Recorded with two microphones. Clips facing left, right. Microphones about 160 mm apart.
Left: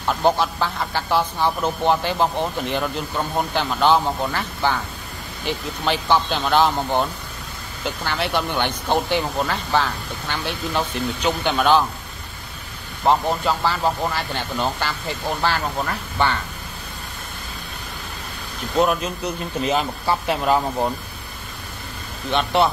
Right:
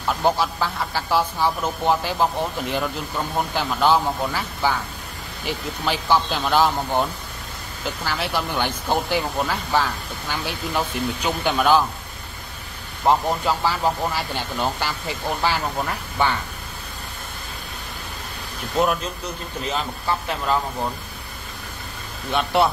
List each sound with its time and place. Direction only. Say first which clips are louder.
0.2 s speech: left 2 dB; centre (ahead or behind)
13.0 s speech: left 1 dB; 5° right (ahead or behind)
19.7 s speech: left 3 dB; 15° left (ahead or behind)
22.3 s speech: left 1 dB; 5° right (ahead or behind)